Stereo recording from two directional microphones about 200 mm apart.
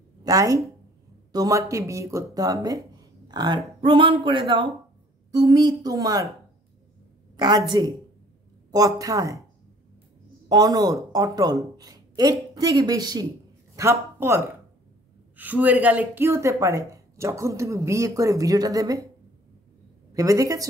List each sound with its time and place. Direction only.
0.2 s speech: 15° right (ahead or behind)
7.3 s speech: 20° right (ahead or behind)
10.5 s speech: 20° right (ahead or behind)
20.2 s speech: 15° right (ahead or behind)